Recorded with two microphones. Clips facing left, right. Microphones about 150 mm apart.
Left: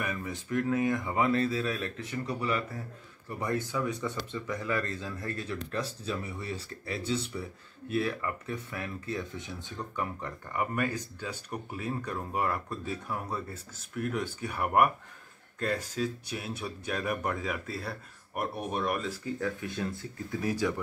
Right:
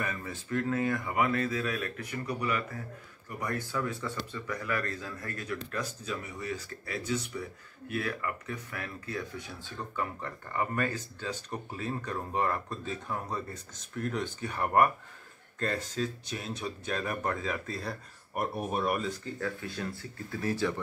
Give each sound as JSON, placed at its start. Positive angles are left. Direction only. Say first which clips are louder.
{"t": 0.0, "sound": "speech", "louder": "left 1 dB", "side_deg": 15}
{"t": 19.4, "sound": "speech", "louder": "left 1 dB", "side_deg": 20}